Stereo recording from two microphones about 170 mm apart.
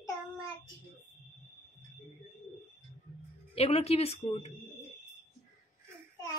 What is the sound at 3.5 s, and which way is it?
Speech, 35° left (ahead or behind).